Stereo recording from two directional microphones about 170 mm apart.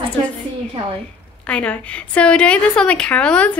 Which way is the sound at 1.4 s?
5° left (ahead or behind).